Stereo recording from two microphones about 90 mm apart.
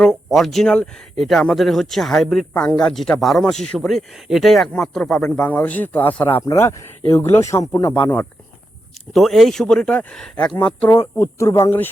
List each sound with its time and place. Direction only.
0.0 s speech: 5° left (ahead or behind)
5.5 s speech: 15° left (ahead or behind)
6.4 s speech: 35° left (ahead or behind)
7.9 s speech: 20° left (ahead or behind)
9.1 s speech: centre (ahead or behind)
10.8 s speech: 30° left (ahead or behind)